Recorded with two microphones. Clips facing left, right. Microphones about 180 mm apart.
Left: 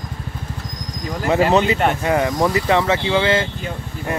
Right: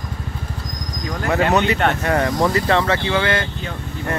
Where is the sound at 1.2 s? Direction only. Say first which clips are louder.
Left 2 dB; 10° left (ahead or behind).